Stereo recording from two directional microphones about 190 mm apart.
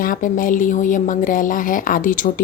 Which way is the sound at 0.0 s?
45° left (ahead or behind).